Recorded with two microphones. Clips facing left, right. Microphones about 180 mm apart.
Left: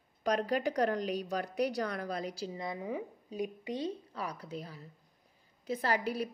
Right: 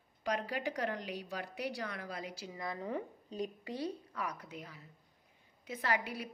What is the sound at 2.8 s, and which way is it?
A woman's voice, 10° left (ahead or behind).